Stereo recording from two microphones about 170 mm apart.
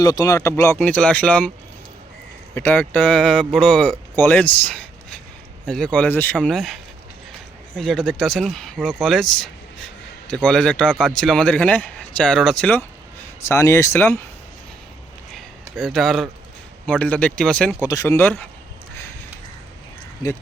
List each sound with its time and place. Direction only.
0.0 s speech: 20° left (ahead or behind)
2.6 s speech: 10° left (ahead or behind)
15.3 s a sound: centre (ahead or behind)
16.8 s speech: 10° left (ahead or behind)
17.8 s speech: 20° left (ahead or behind)